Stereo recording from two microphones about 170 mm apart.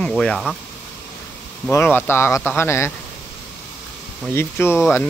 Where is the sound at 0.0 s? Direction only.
5° left (ahead or behind).